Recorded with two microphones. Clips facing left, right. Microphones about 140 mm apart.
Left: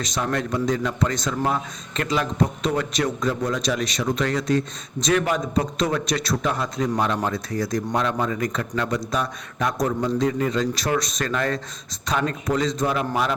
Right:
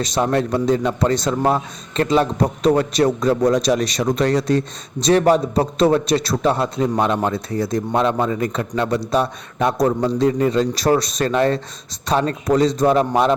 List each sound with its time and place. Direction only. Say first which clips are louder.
0.0 s a man's voice: right 7 dB; 30° right (ahead or behind)